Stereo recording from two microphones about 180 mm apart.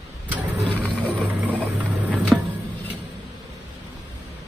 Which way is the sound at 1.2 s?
10° right (ahead or behind).